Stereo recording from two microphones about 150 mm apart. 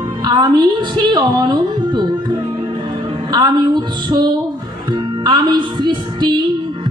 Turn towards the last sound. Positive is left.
turn(degrees=-30)  # may be behind; listen again after turning